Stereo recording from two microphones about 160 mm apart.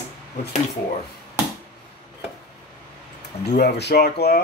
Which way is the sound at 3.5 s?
90° left.